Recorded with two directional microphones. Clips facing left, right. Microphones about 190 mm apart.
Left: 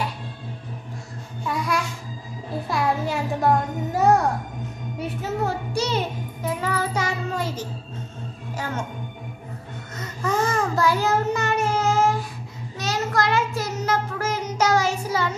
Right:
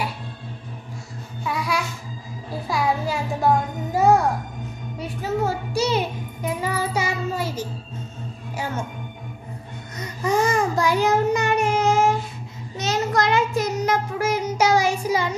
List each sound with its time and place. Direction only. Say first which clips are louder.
1.4 s babbling: even; 5° right (ahead or behind)
2.7 s a child's voice: right 1 dB; centre (ahead or behind)
9.9 s a sound: right 3 dB; 15° right (ahead or behind)
12.7 s child singing: right 2 dB; 20° right (ahead or behind)